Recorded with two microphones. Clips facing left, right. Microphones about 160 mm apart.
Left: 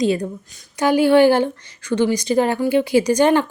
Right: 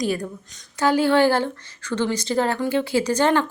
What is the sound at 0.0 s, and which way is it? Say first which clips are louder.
A woman's voice: left 5 dB; 25° left (ahead or behind).